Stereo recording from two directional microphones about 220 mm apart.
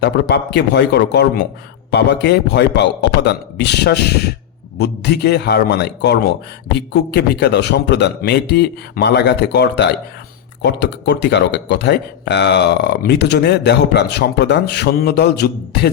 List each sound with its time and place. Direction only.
0.0 s speech: 50° left (ahead or behind)